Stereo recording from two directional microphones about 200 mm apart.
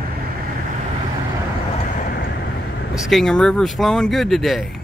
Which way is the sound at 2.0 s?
45° left (ahead or behind).